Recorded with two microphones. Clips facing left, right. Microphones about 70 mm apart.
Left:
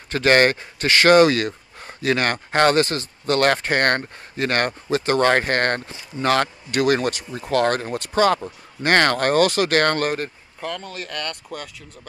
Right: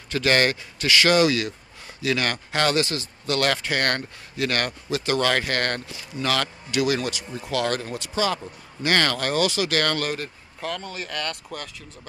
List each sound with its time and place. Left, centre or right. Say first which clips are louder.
0.1 s speech: left 5 dB; left
10.6 s speech: left 1 dB; centre